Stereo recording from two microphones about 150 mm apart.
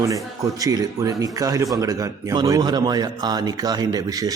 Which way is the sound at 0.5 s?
25° right (ahead or behind).